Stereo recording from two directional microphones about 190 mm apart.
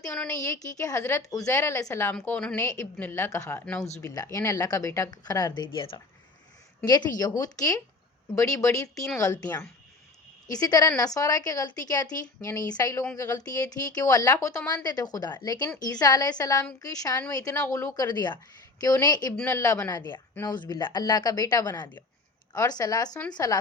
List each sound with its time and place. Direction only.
0.0 s a woman's voice: 10° left (ahead or behind); by 6.0 s 25° left (ahead or behind)
7.2 s a woman's voice: 20° left (ahead or behind)